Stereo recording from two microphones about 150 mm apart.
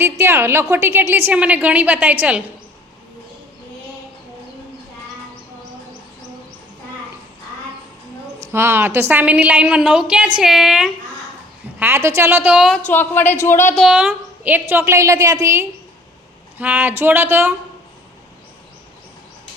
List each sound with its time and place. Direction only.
0.0 s a woman's voice: 15° right (ahead or behind)
8.4 s a woman's voice: 15° right (ahead or behind)
11.8 s a woman's voice: 15° right (ahead or behind)
12.9 s speech: 15° left (ahead or behind)
13.7 s a woman's voice: 5° right (ahead or behind)